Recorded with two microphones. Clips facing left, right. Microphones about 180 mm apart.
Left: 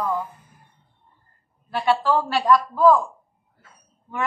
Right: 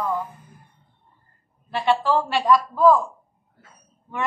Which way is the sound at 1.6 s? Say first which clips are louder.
Even; centre (ahead or behind).